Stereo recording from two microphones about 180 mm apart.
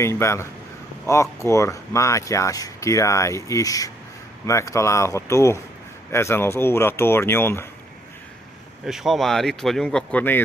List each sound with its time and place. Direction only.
0.0 s speech: 15° left (ahead or behind)
8.8 s speech: centre (ahead or behind)